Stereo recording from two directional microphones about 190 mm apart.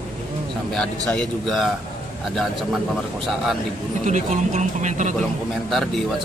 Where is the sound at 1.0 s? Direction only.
Centre (ahead or behind).